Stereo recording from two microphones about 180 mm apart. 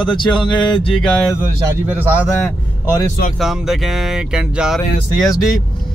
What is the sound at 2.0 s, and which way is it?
Speech, 10° right (ahead or behind).